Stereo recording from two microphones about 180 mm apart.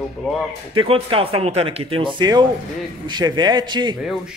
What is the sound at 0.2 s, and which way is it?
Speech, centre (ahead or behind).